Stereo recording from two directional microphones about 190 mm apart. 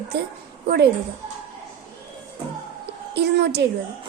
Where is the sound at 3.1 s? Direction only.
65° right (ahead or behind).